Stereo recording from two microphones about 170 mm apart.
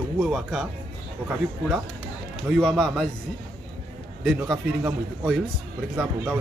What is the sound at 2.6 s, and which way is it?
Speech, 5° left (ahead or behind).